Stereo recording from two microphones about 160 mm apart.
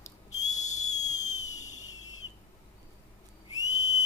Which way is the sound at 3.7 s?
50° left (ahead or behind).